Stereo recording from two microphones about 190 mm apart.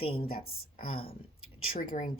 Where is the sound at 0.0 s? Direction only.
30° left (ahead or behind).